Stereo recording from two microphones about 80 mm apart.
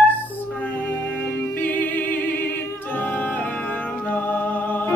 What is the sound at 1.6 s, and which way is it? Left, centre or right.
Music, left.